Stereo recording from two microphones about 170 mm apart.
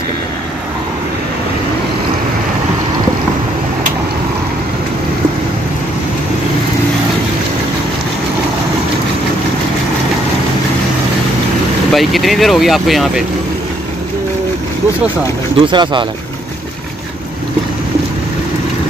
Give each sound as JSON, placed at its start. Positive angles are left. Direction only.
{"t": 11.9, "sound": "speech", "side_deg": 0}
{"t": 15.6, "sound": "speech", "side_deg": -25}